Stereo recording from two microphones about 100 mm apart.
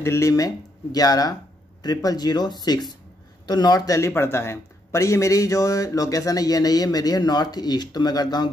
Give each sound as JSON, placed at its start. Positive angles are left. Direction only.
{"t": 0.0, "sound": "speech", "side_deg": 30}